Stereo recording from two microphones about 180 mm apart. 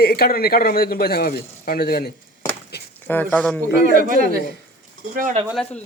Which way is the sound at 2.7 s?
65° left (ahead or behind).